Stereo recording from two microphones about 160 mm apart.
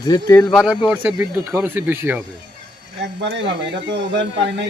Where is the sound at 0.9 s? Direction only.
10° right (ahead or behind).